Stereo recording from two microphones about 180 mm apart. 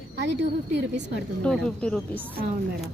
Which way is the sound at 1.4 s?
5° left (ahead or behind).